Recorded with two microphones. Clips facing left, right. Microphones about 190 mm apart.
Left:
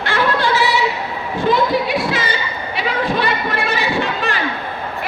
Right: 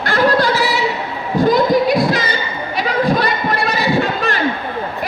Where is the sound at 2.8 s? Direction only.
40° right (ahead or behind).